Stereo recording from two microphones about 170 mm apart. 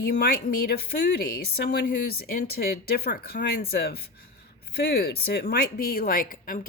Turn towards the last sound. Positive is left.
turn(degrees=55)  # may be behind; listen again after turning